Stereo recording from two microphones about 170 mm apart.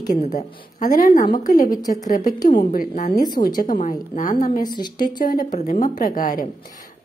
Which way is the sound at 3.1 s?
25° left (ahead or behind).